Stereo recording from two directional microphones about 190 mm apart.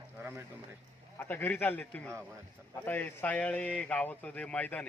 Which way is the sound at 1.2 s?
10° left (ahead or behind).